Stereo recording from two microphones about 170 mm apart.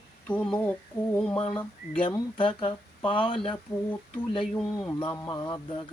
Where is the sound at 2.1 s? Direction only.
30° left (ahead or behind).